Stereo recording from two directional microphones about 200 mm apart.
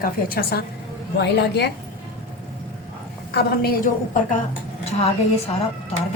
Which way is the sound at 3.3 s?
50° left (ahead or behind).